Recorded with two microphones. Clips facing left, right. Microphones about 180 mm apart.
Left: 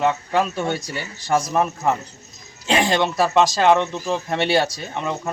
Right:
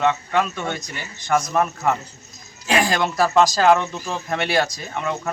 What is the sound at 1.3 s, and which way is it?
A man's voice, 30° left (ahead or behind).